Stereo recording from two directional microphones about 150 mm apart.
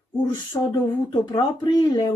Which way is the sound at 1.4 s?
30° left (ahead or behind).